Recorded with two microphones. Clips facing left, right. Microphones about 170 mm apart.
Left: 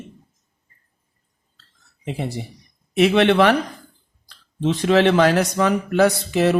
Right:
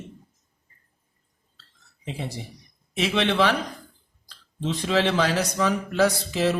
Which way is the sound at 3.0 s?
60° left (ahead or behind).